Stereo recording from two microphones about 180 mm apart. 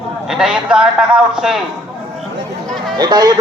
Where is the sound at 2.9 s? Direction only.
20° right (ahead or behind).